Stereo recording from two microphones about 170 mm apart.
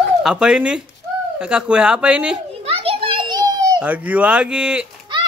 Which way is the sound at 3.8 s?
10° right (ahead or behind).